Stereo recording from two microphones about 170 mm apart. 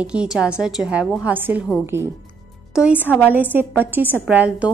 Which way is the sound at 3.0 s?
10° left (ahead or behind).